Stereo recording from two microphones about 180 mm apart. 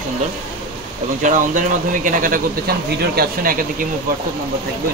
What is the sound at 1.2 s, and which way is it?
Speech, 45° right (ahead or behind).